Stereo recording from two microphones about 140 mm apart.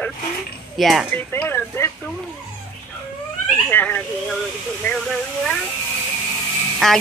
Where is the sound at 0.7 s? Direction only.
Centre (ahead or behind).